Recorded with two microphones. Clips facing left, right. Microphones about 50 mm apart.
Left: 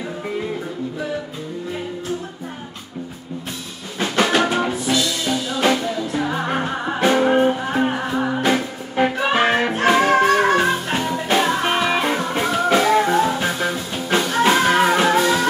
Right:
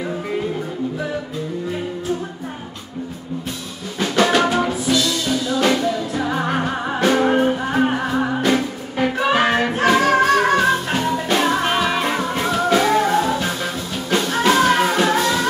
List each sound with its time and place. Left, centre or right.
4.0 s music: centre
8.4 s music: centre